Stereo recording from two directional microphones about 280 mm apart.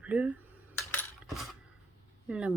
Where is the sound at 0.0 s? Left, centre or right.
Centre.